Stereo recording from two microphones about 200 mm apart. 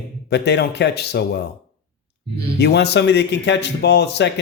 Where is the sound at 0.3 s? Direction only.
55° left (ahead or behind).